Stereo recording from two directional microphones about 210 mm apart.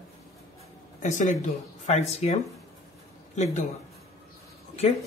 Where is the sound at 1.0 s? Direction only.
35° left (ahead or behind).